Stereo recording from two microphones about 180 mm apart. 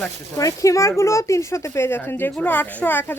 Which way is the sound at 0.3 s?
15° left (ahead or behind).